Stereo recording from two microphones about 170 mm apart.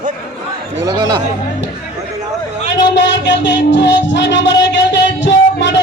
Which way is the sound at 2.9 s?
90° left.